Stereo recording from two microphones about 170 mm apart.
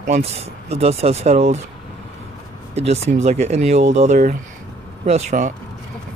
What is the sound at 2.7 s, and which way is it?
Speech, 40° right (ahead or behind).